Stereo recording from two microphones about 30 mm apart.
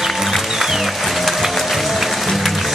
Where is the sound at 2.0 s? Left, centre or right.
Centre.